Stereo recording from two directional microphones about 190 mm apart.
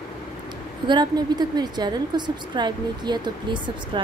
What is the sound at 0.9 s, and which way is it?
A woman's voice, 20° right (ahead or behind).